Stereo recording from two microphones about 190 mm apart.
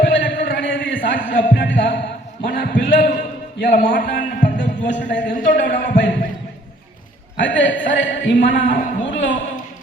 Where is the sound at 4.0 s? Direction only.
45° left (ahead or behind).